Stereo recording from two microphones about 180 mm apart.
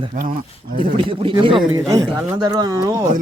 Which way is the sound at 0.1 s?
50° right (ahead or behind).